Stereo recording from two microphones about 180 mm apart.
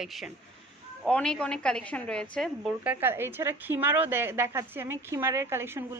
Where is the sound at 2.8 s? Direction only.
10° right (ahead or behind).